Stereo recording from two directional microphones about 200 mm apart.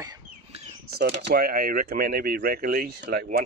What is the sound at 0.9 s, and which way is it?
Speech, 50° right (ahead or behind).